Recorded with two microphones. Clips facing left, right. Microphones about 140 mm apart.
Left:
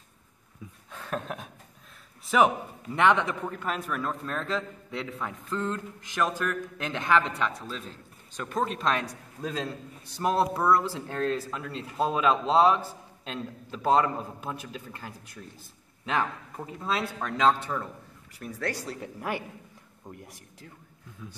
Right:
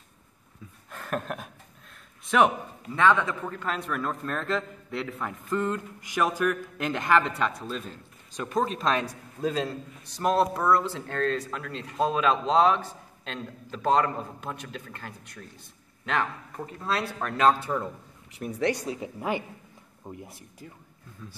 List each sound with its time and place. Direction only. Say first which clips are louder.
0.9 s a sound: right 2 dB; centre (ahead or behind)
3.0 s a man's voice: even; 20° left (ahead or behind); by 7.3 s 5° right (ahead or behind)
8.4 s a man's voice: right 2 dB; 10° right (ahead or behind)
18.9 s a man's voice: right 3 dB; 5° right (ahead or behind)